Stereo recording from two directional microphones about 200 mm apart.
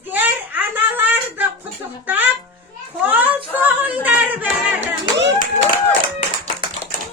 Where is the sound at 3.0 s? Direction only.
10° right (ahead or behind).